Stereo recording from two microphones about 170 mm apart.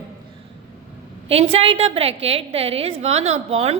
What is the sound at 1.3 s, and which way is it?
A woman's voice, 35° right (ahead or behind).